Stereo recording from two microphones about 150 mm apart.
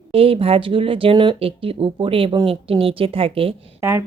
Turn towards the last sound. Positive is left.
turn(degrees=-15)  # may be behind; listen again after turning